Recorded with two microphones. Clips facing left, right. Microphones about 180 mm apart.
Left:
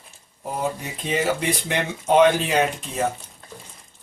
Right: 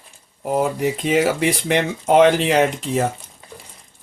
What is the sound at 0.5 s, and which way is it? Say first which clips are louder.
Speech: right 8 dB; 90° right.